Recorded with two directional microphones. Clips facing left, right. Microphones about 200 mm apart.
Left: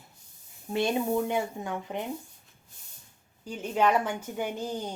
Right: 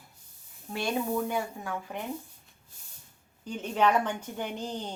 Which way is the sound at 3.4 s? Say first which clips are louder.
Even; 10° left (ahead or behind).